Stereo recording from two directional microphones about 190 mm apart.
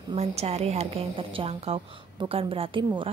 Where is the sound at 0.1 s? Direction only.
35° right (ahead or behind).